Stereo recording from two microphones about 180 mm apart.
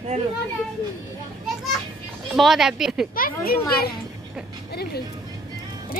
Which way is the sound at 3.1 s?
55° left (ahead or behind).